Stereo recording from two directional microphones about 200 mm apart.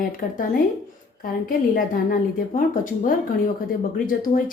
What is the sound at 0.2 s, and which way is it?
Speech, 40° left (ahead or behind).